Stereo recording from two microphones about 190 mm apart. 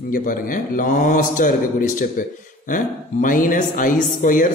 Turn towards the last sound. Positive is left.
turn(degrees=45)  # may be behind; listen again after turning